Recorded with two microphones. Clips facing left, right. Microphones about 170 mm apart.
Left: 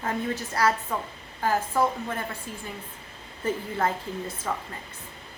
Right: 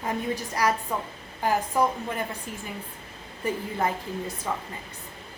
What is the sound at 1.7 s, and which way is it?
Speech, 15° right (ahead or behind).